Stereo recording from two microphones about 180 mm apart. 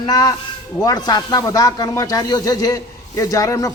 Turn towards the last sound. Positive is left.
turn(degrees=20)  # may be behind; listen again after turning